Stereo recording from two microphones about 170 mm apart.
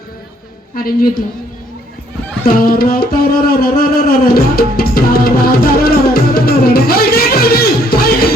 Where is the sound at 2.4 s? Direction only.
60° left (ahead or behind).